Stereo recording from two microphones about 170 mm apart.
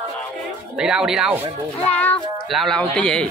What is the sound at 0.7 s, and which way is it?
Speech, 5° right (ahead or behind).